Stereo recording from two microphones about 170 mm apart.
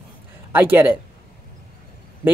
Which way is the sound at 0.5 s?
10° right (ahead or behind).